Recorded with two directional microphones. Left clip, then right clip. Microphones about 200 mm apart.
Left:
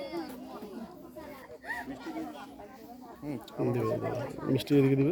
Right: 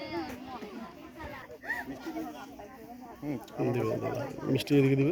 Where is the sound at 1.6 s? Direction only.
35° right (ahead or behind).